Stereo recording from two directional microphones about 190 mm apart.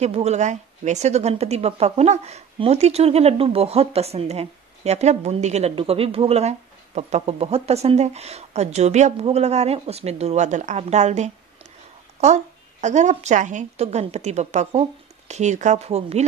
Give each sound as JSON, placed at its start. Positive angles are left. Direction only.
{"t": 0.0, "sound": "speech", "side_deg": -35}
{"t": 12.8, "sound": "speech", "side_deg": -40}